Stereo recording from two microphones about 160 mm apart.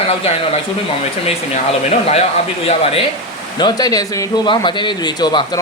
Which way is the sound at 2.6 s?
40° left (ahead or behind).